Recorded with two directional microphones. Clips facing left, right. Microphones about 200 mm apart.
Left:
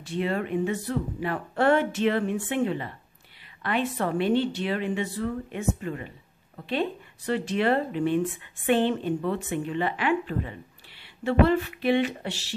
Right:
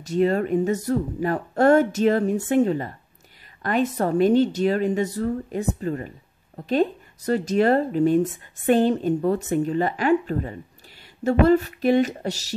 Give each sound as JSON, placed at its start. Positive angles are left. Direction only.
{"t": 0.0, "sound": "a woman's voice", "side_deg": -40}